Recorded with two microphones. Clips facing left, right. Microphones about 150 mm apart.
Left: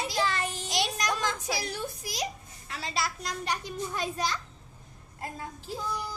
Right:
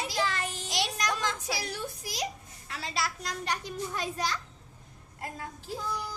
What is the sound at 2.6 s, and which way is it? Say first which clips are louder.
Children playing: left 1 dB; 20° left (ahead or behind).